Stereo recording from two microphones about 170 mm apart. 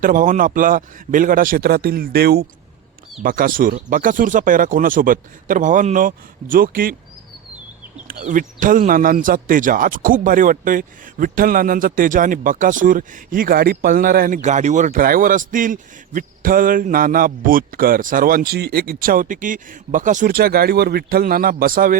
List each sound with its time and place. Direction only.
0.0 s a man's voice: 50° right (ahead or behind)
3.2 s speech: 55° right (ahead or behind)
8.0 s speech: 55° right (ahead or behind)
14.4 s a man's voice: 45° right (ahead or behind)